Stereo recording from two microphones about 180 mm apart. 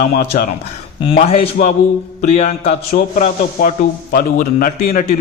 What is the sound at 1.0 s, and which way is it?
A man's voice, 30° left (ahead or behind).